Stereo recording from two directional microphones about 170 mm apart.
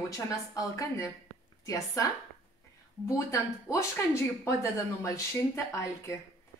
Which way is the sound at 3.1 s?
20° left (ahead or behind).